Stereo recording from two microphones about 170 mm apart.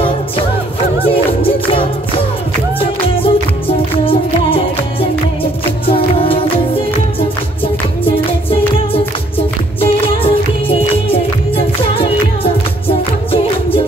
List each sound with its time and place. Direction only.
1.0 s music: 30° left (ahead or behind)
8.0 s music: 30° left (ahead or behind)